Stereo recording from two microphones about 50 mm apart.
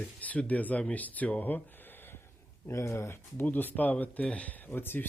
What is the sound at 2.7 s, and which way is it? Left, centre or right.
Speech, left.